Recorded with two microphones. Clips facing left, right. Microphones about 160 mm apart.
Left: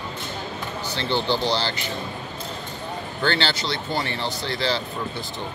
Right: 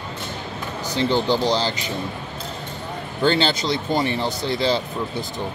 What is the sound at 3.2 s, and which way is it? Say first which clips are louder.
Speech: right 5 dB; 15° right (ahead or behind).